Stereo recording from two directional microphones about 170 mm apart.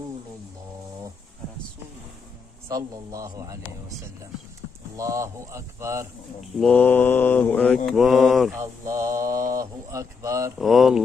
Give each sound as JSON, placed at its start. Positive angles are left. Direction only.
{"t": 2.7, "sound": "speech", "side_deg": -20}
{"t": 4.9, "sound": "speech", "side_deg": -20}
{"t": 6.6, "sound": "mantra", "side_deg": 10}
{"t": 8.5, "sound": "mantra", "side_deg": -15}
{"t": 10.6, "sound": "speech", "side_deg": 0}